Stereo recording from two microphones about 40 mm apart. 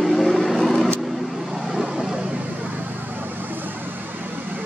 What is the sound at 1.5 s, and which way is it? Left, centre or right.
Vehicle, centre.